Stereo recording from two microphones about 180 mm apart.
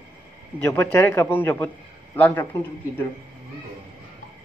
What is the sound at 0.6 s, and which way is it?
Speech, 15° left (ahead or behind).